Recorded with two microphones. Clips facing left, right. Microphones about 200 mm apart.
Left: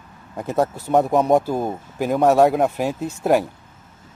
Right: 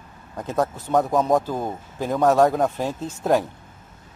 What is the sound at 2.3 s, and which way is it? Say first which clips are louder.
Speech: left 2 dB; 10° left (ahead or behind).